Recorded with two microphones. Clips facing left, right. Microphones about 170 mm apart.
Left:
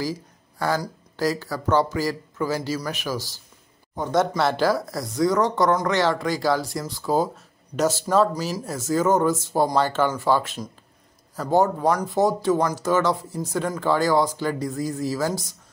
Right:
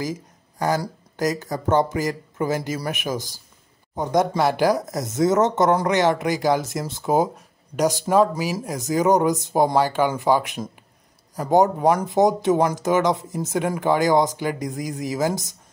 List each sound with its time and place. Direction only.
0.0 s speech: 20° right (ahead or behind)